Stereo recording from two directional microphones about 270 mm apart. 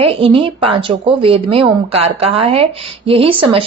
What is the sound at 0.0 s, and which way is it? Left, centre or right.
Speech, right.